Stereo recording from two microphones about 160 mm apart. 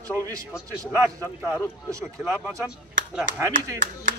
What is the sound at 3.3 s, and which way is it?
Speech, 20° right (ahead or behind).